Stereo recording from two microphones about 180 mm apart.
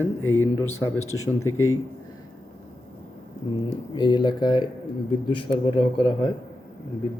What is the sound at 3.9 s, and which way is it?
Speech, 25° left (ahead or behind).